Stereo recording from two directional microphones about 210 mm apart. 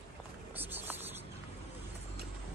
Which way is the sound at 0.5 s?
10° right (ahead or behind).